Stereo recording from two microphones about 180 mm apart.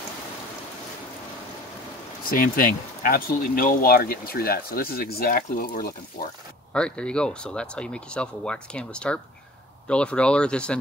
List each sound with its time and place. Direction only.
2.2 s speech: 55° left (ahead or behind)
6.7 s speech: 5° left (ahead or behind)